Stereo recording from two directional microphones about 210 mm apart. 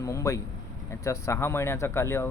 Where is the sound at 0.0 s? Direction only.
15° left (ahead or behind).